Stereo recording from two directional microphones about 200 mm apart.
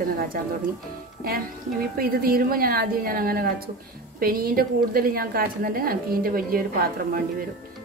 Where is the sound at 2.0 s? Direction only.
45° right (ahead or behind).